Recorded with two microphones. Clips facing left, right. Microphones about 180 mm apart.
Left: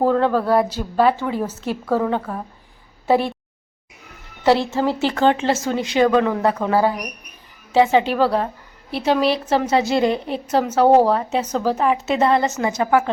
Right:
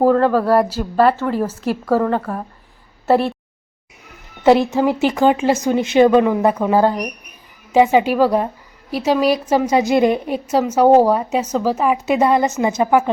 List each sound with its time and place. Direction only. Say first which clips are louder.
0.0 s a woman's voice: right 3 dB; centre (ahead or behind)
4.4 s a woman's voice: right 4 dB; 15° right (ahead or behind)